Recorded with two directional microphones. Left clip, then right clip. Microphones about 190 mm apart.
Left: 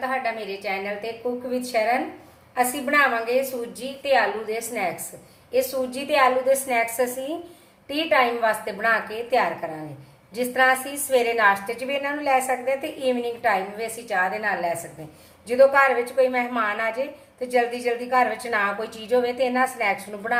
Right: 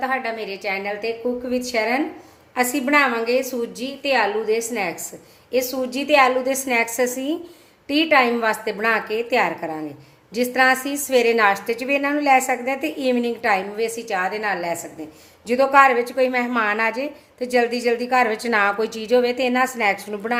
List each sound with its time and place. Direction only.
0.0 s a woman's voice: 55° right (ahead or behind)